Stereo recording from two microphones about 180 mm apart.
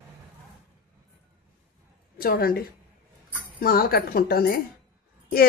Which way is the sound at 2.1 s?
55° left (ahead or behind).